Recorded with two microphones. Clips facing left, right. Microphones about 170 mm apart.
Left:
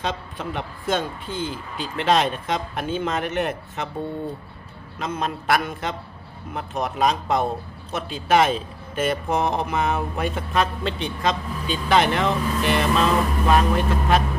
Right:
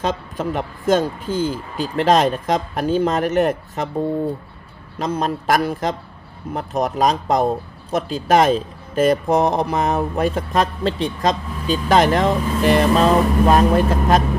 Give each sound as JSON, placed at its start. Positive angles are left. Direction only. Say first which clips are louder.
{"t": 0.0, "sound": "speech", "louder": "right 6 dB", "side_deg": -40}
{"t": 4.9, "sound": "speech", "louder": "right 5 dB", "side_deg": -35}